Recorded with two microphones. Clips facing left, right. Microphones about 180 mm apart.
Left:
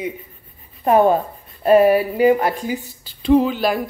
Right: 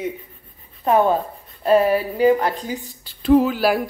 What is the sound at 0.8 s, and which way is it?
A woman's voice, 10° left (ahead or behind).